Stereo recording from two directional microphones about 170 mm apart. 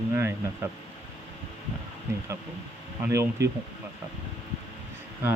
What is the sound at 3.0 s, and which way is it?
Speech, 15° right (ahead or behind).